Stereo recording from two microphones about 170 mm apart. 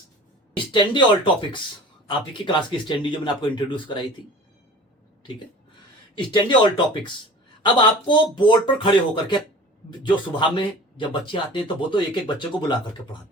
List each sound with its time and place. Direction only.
0.5 s speech: 30° left (ahead or behind)
6.1 s speech: 25° left (ahead or behind)
7.6 s speech: 25° left (ahead or behind)